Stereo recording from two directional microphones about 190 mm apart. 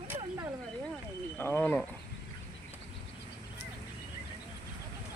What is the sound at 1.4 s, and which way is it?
Speech, 10° left (ahead or behind).